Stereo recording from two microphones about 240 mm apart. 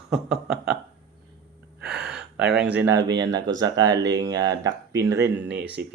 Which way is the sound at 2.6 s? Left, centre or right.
Centre.